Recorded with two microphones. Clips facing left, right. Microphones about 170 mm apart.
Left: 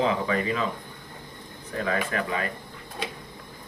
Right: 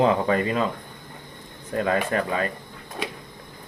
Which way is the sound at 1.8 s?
40° right (ahead or behind).